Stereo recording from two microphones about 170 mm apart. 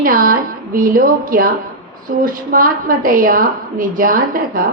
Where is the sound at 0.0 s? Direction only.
55° right (ahead or behind).